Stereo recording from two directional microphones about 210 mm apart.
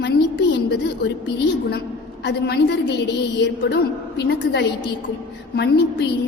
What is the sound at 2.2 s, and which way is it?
A woman's voice, 55° left (ahead or behind).